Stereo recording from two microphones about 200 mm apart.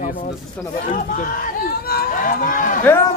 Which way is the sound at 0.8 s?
40° left (ahead or behind).